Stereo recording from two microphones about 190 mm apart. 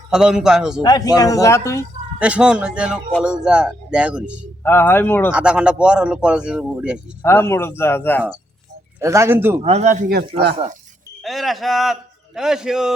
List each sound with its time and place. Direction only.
0.1 s speech: 5° right (ahead or behind)
0.8 s speech: 20° left (ahead or behind)
2.1 s speech: 5° right (ahead or behind)
4.6 s speech: 10° left (ahead or behind)
5.3 s speech: 5° right (ahead or behind)
7.2 s speech: 10° left (ahead or behind)
9.0 s a man's voice: 15° right (ahead or behind)
9.6 s speech: 35° right (ahead or behind)
11.2 s a man's voice: centre (ahead or behind)